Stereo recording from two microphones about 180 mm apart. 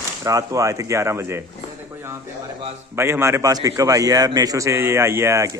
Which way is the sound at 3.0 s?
15° right (ahead or behind).